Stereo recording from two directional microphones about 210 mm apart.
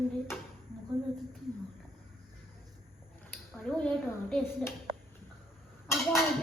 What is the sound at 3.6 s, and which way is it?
Speech, 5° left (ahead or behind).